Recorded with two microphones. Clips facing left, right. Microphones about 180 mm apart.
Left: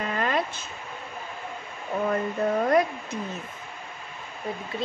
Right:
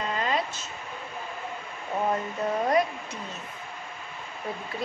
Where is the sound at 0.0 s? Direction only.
55° left (ahead or behind).